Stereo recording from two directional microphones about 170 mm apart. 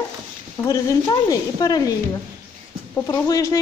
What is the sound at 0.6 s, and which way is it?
Speech, 15° left (ahead or behind).